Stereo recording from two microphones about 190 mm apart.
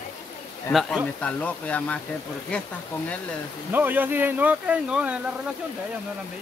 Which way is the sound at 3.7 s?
10° right (ahead or behind).